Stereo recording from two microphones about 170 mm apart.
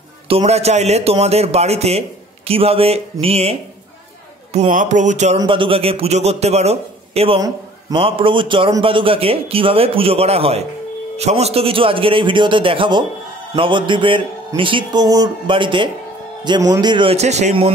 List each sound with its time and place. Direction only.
0.3 s speech: 35° right (ahead or behind)
4.5 s music: 45° right (ahead or behind)
5.4 s speech: 30° right (ahead or behind)
7.3 s speech: 25° right (ahead or behind)